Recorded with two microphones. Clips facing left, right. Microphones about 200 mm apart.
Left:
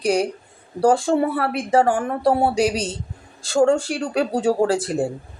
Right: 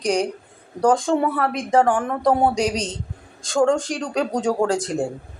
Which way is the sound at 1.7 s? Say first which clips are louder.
Even; 35° left (ahead or behind).